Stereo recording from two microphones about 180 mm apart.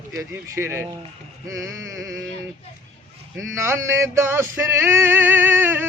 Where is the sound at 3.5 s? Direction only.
15° right (ahead or behind).